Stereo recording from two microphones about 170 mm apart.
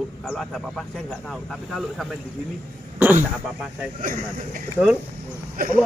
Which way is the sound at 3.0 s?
10° right (ahead or behind).